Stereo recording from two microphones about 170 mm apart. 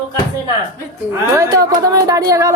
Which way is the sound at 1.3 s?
20° right (ahead or behind).